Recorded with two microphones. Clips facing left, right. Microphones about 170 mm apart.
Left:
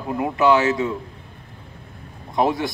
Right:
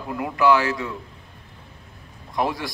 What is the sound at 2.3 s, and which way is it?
Speech, 25° left (ahead or behind).